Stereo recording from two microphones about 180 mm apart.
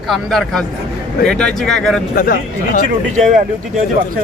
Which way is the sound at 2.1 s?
55° left (ahead or behind).